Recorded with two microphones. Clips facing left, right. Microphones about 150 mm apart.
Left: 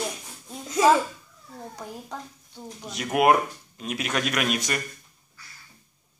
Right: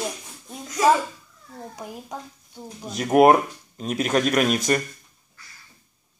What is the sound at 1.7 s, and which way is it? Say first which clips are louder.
A woman's voice: right 2 dB; 15° right (ahead or behind).